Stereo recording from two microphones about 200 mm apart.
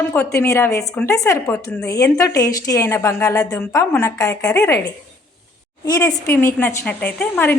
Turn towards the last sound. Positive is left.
turn(degrees=10)  # may be behind; listen again after turning